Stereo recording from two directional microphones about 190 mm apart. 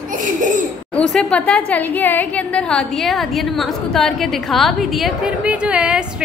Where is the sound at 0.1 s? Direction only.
45° right (ahead or behind).